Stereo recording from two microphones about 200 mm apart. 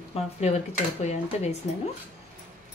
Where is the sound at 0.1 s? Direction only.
30° left (ahead or behind).